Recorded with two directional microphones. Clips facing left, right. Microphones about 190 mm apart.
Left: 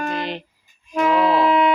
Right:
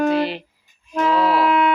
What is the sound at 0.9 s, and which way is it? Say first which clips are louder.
Music: left 1 dB; 15° left (ahead or behind).